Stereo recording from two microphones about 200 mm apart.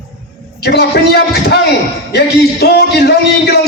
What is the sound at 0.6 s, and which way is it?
A man's voice, 55° left (ahead or behind).